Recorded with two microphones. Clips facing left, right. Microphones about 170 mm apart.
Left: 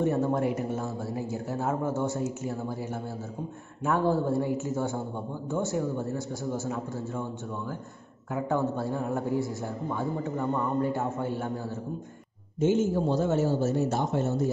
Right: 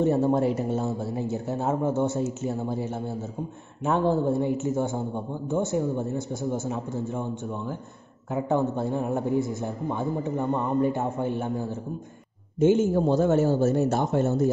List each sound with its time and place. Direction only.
0.0 s a man's voice: 30° right (ahead or behind)
12.5 s a man's voice: 55° right (ahead or behind)